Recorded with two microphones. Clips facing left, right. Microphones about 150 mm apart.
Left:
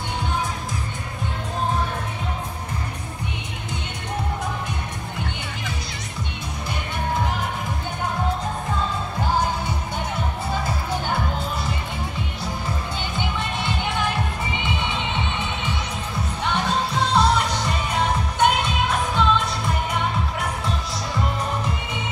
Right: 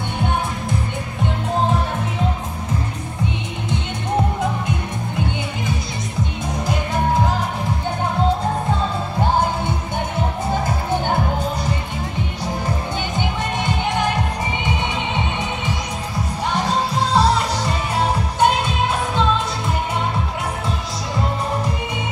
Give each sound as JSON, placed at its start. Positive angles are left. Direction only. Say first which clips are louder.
{"t": 13.1, "sound": "music", "louder": "right 2 dB", "side_deg": -45}
{"t": 16.4, "sound": "music", "louder": "right 3 dB", "side_deg": -35}